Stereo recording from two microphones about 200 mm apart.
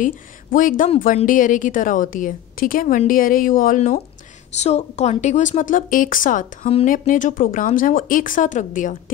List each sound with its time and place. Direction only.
0.0 s speech: 40° left (ahead or behind)